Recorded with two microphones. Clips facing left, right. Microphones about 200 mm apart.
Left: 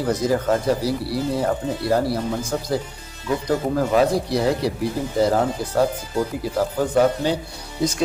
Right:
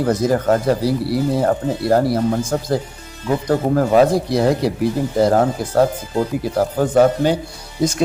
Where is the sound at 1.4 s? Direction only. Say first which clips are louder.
Right 4 dB; 50° right (ahead or behind).